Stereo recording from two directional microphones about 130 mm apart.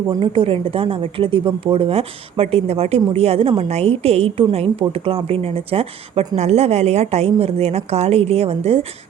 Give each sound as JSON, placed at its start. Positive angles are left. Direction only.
{"t": 0.3, "sound": "a woman's voice", "side_deg": -45}